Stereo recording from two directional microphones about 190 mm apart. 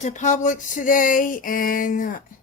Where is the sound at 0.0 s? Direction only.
40° left (ahead or behind).